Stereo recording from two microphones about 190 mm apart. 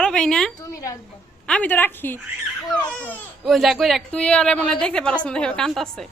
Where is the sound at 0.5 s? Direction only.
15° left (ahead or behind).